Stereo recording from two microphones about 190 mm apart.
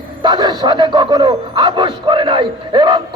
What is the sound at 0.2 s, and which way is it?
A man's voice, 20° right (ahead or behind).